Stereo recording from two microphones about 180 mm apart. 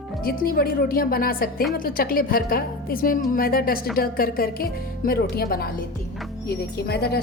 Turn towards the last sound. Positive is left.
turn(degrees=60)  # may be behind; listen again after turning